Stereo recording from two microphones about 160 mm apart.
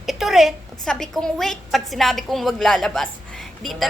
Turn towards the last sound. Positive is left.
turn(degrees=0)  # may be behind; listen again after turning